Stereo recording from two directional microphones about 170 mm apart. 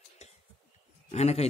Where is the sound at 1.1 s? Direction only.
40° left (ahead or behind).